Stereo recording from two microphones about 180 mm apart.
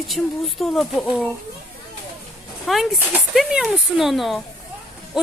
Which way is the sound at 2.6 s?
Centre (ahead or behind).